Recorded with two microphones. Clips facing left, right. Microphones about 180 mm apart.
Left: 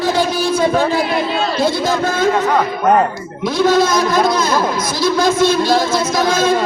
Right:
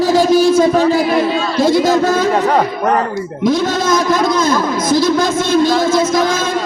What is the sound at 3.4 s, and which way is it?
Speech, 50° right (ahead or behind).